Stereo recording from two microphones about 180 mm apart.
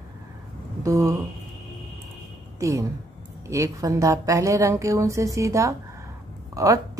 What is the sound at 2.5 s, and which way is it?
A woman's voice, 15° right (ahead or behind).